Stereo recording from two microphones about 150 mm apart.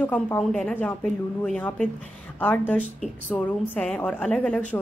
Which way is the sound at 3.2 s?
10° left (ahead or behind).